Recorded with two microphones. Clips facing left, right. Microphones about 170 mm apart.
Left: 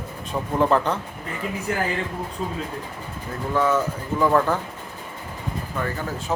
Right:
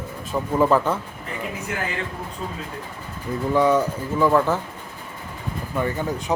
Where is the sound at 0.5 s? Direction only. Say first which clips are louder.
Right 1 dB; 5° right (ahead or behind).